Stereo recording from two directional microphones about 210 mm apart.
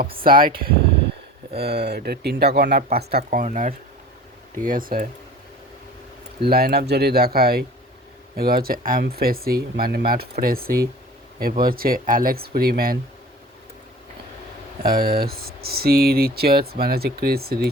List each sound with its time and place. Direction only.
0.3 s speech: 45° right (ahead or behind)
6.4 s speech: 45° right (ahead or behind)
14.8 s speech: 45° right (ahead or behind)